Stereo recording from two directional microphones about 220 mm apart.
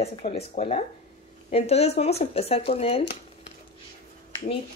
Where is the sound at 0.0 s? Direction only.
30° left (ahead or behind).